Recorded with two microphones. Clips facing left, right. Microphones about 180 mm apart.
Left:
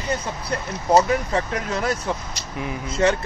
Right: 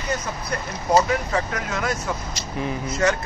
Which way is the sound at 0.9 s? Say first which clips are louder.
Left 2 dB; 30° left (ahead or behind).